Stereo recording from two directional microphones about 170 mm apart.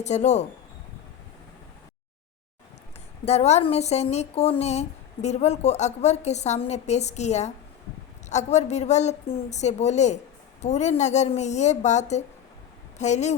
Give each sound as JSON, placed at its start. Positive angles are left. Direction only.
{"t": 0.0, "sound": "a woman's voice", "side_deg": 40}
{"t": 3.2, "sound": "a woman's voice", "side_deg": 40}